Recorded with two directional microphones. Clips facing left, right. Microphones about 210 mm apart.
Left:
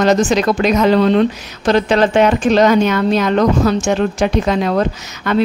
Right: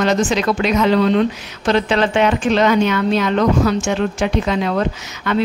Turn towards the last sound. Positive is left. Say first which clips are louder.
# left 2 dB
turn(degrees=40)  # may be behind; listen again after turning